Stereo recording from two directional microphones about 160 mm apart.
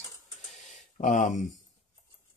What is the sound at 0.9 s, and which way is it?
Speech, 50° left (ahead or behind).